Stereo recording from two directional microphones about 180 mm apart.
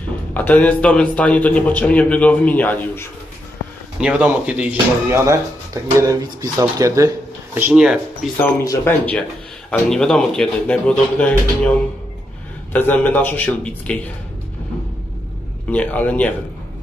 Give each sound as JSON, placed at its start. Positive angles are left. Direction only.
{"t": 0.3, "sound": "a man's voice", "side_deg": 10}
{"t": 4.0, "sound": "speech", "side_deg": -5}
{"t": 7.5, "sound": "speech", "side_deg": -5}
{"t": 8.6, "sound": "a man's voice", "side_deg": 10}
{"t": 12.7, "sound": "a man's voice", "side_deg": 10}
{"t": 15.7, "sound": "a man's voice", "side_deg": 10}